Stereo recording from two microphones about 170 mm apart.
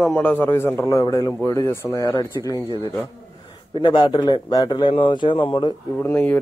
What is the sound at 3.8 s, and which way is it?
Speech, 25° left (ahead or behind).